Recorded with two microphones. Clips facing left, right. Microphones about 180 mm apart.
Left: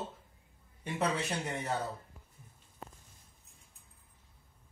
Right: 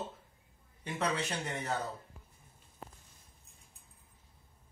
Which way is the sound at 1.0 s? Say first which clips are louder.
Left 1 dB; 10° left (ahead or behind).